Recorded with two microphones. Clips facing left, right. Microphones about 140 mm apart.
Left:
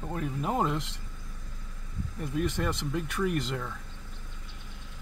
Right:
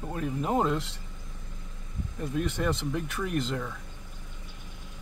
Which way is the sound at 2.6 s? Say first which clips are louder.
Right 2 dB; 5° right (ahead or behind).